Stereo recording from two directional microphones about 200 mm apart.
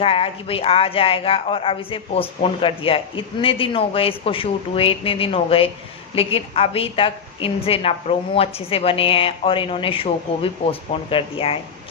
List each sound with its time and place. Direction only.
0.0 s speech: 30° left (ahead or behind)